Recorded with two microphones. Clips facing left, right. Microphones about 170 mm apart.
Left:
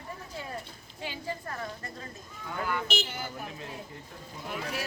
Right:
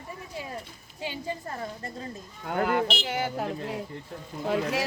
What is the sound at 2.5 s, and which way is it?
Speech, 75° right (ahead or behind).